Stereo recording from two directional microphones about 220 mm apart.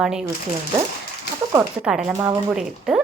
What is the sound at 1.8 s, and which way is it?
A woman's voice, 5° right (ahead or behind).